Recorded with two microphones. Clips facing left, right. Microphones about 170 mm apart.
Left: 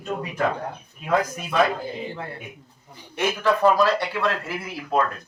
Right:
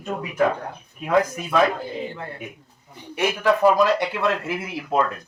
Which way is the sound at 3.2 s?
15° right (ahead or behind).